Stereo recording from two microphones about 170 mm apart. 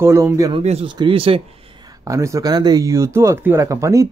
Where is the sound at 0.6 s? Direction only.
35° right (ahead or behind).